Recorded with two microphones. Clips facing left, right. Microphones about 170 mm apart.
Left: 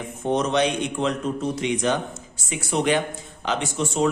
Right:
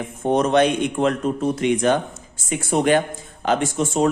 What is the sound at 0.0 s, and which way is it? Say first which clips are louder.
Speech: right 4 dB; 50° right (ahead or behind).